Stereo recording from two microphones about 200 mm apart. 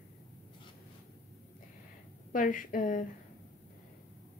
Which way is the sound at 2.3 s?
40° left (ahead or behind).